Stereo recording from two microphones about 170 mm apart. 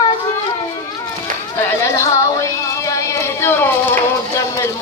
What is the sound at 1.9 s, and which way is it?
Music, 20° left (ahead or behind).